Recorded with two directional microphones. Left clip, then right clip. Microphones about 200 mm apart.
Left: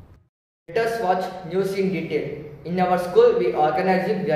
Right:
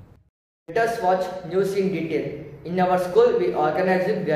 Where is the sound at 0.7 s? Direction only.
10° right (ahead or behind).